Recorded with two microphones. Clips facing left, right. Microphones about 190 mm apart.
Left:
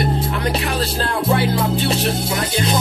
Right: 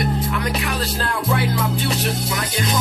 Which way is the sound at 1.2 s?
30° left (ahead or behind).